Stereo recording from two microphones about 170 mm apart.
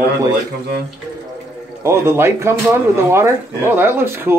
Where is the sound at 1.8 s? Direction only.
15° right (ahead or behind).